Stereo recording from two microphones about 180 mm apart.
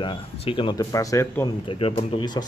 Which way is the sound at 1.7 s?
30° left (ahead or behind).